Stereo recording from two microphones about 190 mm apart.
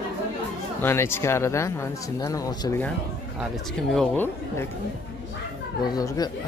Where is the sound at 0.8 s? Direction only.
10° left (ahead or behind).